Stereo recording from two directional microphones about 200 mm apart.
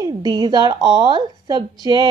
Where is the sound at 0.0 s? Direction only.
20° right (ahead or behind).